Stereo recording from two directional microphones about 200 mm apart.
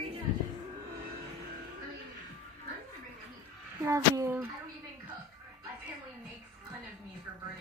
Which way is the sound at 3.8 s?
15° right (ahead or behind).